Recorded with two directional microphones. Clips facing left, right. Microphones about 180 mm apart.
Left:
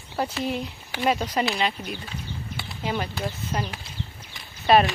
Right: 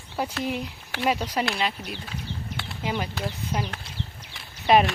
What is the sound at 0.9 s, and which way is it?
Speech, 5° right (ahead or behind).